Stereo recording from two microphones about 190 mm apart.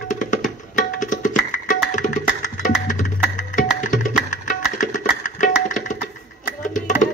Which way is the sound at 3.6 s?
40° left (ahead or behind).